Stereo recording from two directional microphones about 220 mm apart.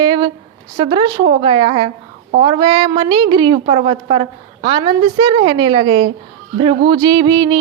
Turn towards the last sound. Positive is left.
turn(degrees=-20)  # may be behind; listen again after turning